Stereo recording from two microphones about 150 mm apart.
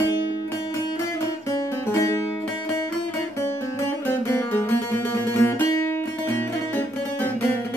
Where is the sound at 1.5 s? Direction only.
20° left (ahead or behind).